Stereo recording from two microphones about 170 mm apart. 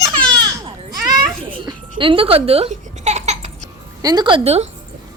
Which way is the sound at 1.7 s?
25° right (ahead or behind).